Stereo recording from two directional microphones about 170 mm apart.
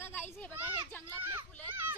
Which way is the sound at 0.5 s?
10° right (ahead or behind).